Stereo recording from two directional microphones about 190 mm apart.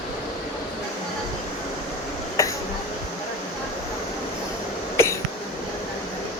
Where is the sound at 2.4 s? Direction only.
15° left (ahead or behind).